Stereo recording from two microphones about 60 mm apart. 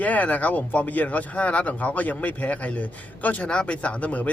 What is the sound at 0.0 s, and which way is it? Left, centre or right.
Speech, left.